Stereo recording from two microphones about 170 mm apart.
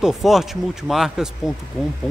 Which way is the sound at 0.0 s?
Centre (ahead or behind).